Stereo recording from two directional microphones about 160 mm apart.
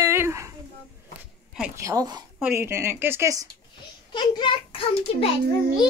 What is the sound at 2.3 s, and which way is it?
Speech, 10° right (ahead or behind).